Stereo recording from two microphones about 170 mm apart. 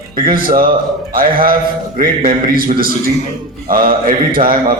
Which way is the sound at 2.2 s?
55° right (ahead or behind).